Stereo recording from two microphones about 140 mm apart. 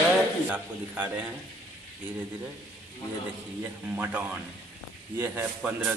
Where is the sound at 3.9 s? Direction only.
10° right (ahead or behind).